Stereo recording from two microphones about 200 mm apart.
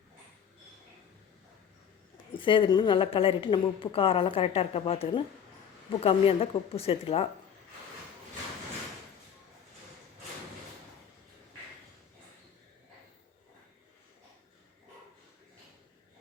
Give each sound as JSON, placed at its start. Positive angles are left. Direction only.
{"t": 2.4, "sound": "a woman's voice", "side_deg": 25}